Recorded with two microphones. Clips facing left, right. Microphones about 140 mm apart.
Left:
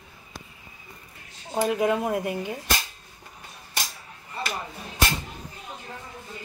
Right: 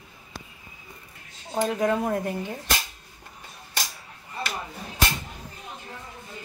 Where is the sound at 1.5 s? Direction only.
10° left (ahead or behind).